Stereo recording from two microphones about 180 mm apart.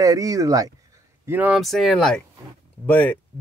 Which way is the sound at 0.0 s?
20° right (ahead or behind).